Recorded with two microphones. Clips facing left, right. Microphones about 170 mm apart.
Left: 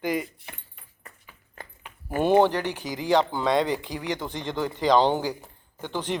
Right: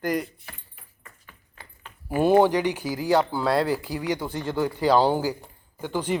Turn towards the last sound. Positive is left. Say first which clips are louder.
# right 3 dB
turn(degrees=-10)  # may be behind; listen again after turning